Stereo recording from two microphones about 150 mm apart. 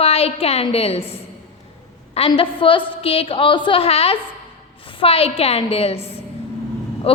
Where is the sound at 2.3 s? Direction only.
35° left (ahead or behind).